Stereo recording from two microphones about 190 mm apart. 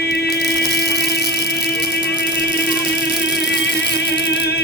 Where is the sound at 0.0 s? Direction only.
55° left (ahead or behind).